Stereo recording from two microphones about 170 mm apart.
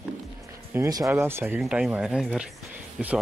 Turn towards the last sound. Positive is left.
turn(degrees=-5)  # may be behind; listen again after turning